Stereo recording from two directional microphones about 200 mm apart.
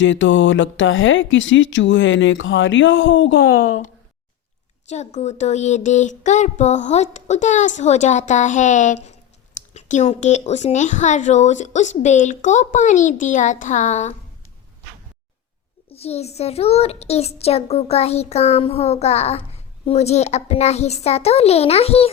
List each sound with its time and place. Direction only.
0.0 s speech: 65° left (ahead or behind)
4.9 s a child's voice: 35° left (ahead or behind)
15.9 s a child's voice: 30° left (ahead or behind)